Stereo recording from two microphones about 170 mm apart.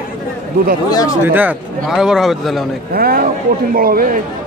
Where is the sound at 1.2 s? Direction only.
10° right (ahead or behind).